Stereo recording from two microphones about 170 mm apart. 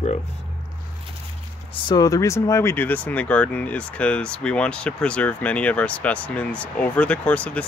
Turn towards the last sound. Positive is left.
turn(degrees=10)  # may be behind; listen again after turning